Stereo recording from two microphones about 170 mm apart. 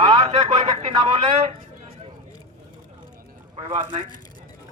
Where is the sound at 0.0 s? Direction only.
35° right (ahead or behind).